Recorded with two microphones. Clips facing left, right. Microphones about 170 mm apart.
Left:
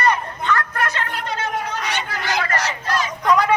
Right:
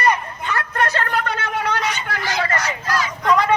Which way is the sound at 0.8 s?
40° right (ahead or behind).